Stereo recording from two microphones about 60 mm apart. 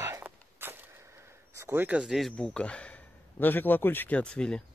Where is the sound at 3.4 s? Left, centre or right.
Left.